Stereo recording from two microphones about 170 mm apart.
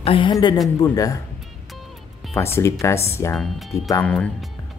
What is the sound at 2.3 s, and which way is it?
Speech, 15° left (ahead or behind).